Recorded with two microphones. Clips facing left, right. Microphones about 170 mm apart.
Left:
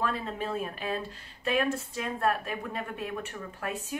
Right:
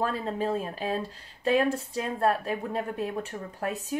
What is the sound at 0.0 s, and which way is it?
Speech, 35° right (ahead or behind).